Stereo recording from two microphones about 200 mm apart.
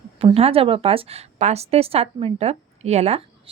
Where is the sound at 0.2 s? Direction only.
30° right (ahead or behind).